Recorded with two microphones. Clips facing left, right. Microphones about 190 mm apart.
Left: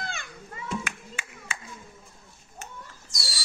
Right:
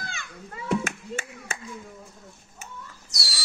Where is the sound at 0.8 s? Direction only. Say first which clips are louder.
Right 7 dB; 45° right (ahead or behind).